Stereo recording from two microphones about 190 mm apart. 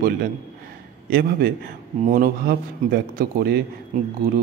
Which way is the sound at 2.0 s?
50° right (ahead or behind).